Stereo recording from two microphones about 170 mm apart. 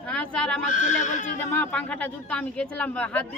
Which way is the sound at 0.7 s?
45° left (ahead or behind).